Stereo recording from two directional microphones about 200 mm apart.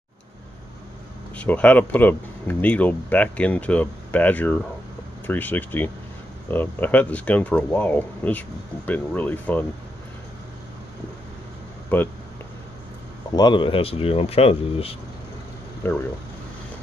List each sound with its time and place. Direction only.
1.3 s speech: 5° left (ahead or behind)
11.9 s speech: 10° left (ahead or behind)
13.3 s speech: 20° left (ahead or behind)
15.8 s speech: 10° left (ahead or behind)